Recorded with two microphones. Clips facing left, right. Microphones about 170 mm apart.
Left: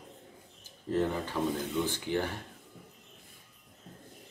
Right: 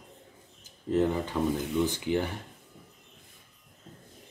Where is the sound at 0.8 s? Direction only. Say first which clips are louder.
Right 4 dB; 20° right (ahead or behind).